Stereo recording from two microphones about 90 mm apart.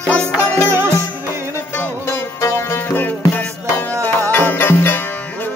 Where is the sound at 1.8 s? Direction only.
30° left (ahead or behind).